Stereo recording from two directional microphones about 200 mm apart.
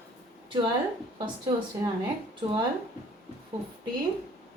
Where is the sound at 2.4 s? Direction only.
25° right (ahead or behind).